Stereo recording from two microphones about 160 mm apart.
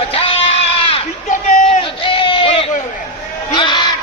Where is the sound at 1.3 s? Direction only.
50° left (ahead or behind).